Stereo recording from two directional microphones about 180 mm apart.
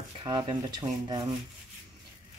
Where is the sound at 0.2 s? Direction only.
25° right (ahead or behind).